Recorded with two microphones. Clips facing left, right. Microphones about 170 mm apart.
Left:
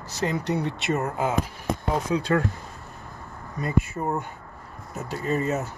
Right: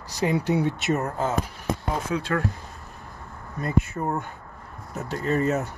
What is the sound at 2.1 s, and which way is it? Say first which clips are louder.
Speech: left 4 dB; 35° left (ahead or behind).